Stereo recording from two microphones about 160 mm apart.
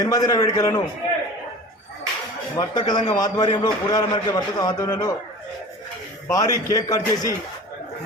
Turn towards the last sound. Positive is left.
turn(degrees=20)  # may be behind; listen again after turning